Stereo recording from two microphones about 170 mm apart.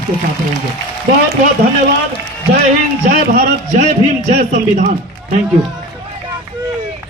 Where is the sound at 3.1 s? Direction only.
55° right (ahead or behind).